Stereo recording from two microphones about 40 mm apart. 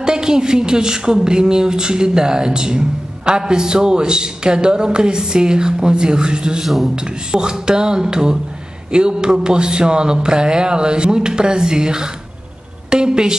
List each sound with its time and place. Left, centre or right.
0.0 s a woman's voice: centre
6.6 s a man's voice: centre
7.0 s a woman's voice: centre